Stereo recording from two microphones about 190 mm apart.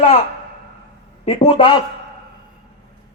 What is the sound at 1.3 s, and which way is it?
Speech, 25° left (ahead or behind).